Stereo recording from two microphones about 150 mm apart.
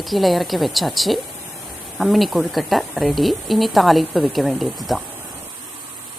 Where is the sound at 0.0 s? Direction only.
Centre (ahead or behind).